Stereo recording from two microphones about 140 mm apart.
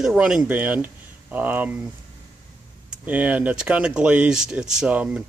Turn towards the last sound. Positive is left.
turn(degrees=-10)  # may be behind; listen again after turning